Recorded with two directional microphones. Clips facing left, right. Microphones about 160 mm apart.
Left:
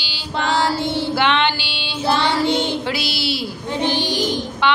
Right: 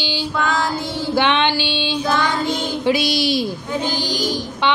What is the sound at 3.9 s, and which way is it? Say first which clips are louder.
Child singing: left 2 dB; 20° left (ahead or behind).